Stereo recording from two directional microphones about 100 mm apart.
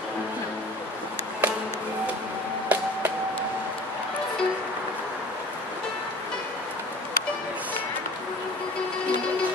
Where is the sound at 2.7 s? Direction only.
15° right (ahead or behind).